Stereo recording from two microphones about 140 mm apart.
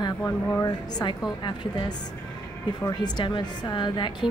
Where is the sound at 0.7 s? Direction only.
30° left (ahead or behind).